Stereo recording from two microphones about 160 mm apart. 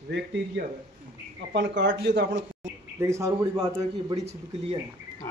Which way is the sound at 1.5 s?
90° right.